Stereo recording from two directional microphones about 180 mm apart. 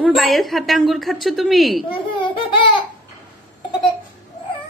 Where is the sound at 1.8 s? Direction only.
30° left (ahead or behind).